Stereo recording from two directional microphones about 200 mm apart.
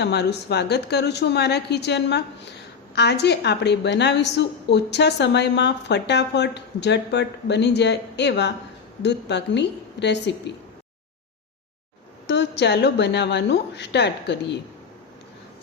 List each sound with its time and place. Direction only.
0.0 s a woman's voice: 55° left (ahead or behind)
12.3 s a woman's voice: 60° left (ahead or behind)